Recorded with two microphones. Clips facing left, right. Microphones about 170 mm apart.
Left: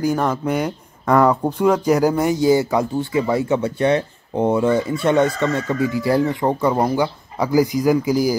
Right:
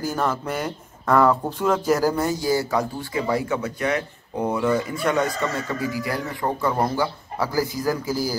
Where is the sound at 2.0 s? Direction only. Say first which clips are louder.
Left 6 dB; 15° left (ahead or behind).